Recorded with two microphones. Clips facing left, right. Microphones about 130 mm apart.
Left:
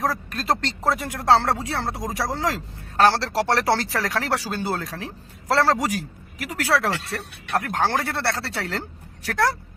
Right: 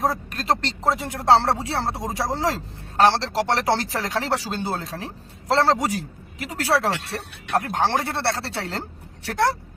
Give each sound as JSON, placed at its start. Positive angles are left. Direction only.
{"t": 0.0, "sound": "speech", "side_deg": -20}